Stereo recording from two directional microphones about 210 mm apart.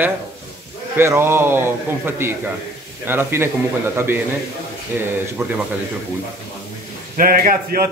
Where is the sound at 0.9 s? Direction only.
10° right (ahead or behind).